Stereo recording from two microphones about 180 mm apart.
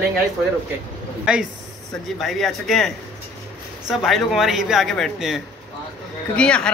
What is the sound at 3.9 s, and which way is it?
Speech, centre (ahead or behind).